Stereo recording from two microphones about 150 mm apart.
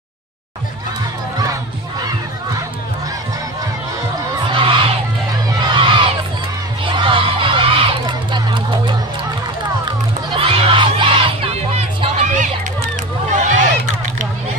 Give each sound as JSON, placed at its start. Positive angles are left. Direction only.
{"t": 4.5, "sound": "crowd", "side_deg": -35}
{"t": 9.8, "sound": "music", "side_deg": -35}
{"t": 13.3, "sound": "a sound", "side_deg": -55}